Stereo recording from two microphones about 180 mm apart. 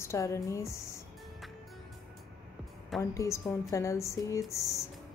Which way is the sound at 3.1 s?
15° left (ahead or behind).